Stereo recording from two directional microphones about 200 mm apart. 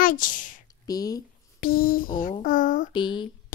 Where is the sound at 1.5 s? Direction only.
45° left (ahead or behind).